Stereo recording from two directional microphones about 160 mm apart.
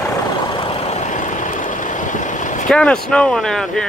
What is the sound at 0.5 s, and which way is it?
Vehicle, 35° left (ahead or behind).